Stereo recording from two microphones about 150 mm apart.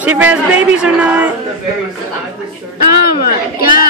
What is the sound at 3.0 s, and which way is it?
Speech, 90° left.